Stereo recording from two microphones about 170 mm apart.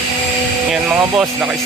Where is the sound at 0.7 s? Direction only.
5° right (ahead or behind).